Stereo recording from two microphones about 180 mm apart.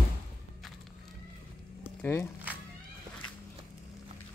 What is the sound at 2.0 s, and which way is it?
Speech, 15° left (ahead or behind).